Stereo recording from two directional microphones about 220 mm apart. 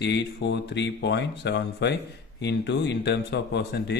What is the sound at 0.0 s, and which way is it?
Speech, 50° left (ahead or behind).